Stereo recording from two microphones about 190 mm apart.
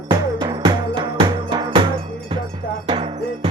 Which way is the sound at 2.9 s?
30° right (ahead or behind).